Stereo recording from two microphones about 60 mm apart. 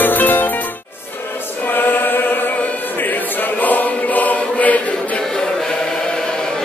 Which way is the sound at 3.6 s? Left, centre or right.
Left.